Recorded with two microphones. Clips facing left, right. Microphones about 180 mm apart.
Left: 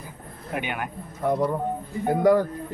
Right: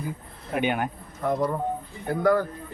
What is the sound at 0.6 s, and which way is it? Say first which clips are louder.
Speech: right 8 dB; 25° right (ahead or behind).